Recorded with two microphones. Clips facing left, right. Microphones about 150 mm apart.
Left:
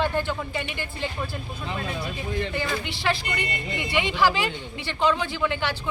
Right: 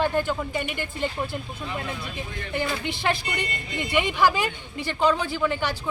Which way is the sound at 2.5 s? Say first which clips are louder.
Right 1 dB; 50° right (ahead or behind).